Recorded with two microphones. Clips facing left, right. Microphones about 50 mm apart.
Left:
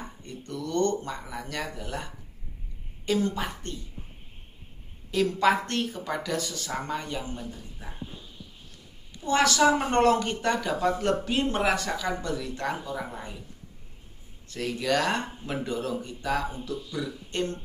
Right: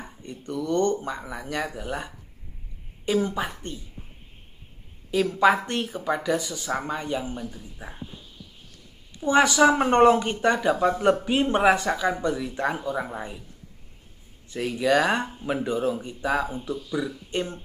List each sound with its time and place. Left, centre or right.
0.2 s speech: centre
3.1 s speech: centre
5.1 s speech: centre
9.2 s speech: right
14.5 s speech: centre